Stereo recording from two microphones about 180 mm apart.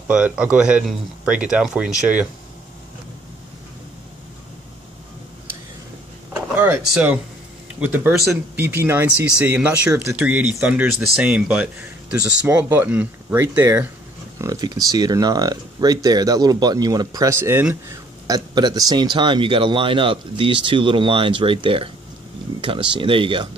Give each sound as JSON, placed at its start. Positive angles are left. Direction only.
{"t": 0.1, "sound": "speech", "side_deg": -5}
{"t": 6.3, "sound": "drawer open or close", "side_deg": -5}
{"t": 7.8, "sound": "speech", "side_deg": -10}